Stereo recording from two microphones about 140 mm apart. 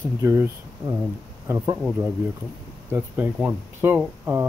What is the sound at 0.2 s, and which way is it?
Speech, 20° right (ahead or behind).